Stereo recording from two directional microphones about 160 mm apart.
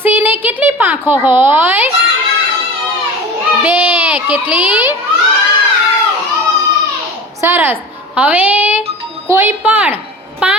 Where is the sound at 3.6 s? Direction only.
10° right (ahead or behind).